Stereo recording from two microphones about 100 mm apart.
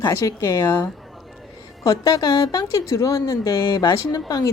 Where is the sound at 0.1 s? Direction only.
30° left (ahead or behind).